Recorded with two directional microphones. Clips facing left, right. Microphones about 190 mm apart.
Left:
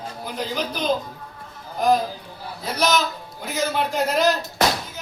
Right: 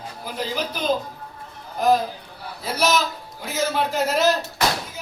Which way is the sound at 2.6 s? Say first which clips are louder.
Even; 5° right (ahead or behind).